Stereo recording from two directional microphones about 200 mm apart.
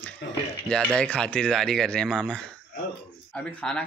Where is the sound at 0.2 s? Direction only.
60° left (ahead or behind).